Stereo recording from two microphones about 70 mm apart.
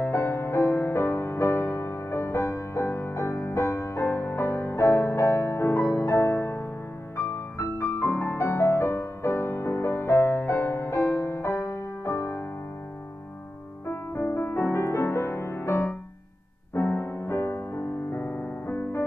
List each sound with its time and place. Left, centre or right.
0.0 s music: left
13.8 s music: left